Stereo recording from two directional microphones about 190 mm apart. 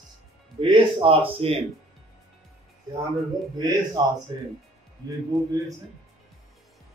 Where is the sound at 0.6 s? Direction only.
25° right (ahead or behind).